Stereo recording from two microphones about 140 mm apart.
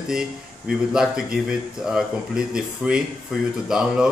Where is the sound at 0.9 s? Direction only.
5° right (ahead or behind).